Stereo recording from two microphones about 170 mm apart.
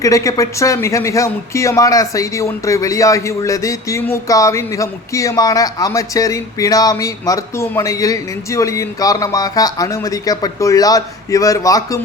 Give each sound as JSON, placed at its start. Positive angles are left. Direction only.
{"t": 0.0, "sound": "speech", "side_deg": 20}